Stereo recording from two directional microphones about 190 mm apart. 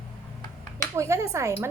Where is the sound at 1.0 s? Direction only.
15° right (ahead or behind).